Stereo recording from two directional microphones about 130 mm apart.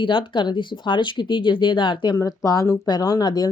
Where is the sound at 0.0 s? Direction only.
40° left (ahead or behind).